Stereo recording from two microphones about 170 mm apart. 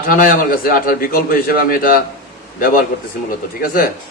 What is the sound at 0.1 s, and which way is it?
A man's voice, 55° left (ahead or behind).